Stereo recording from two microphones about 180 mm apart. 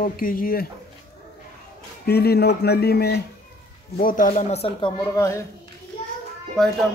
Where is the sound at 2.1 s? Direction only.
65° left (ahead or behind).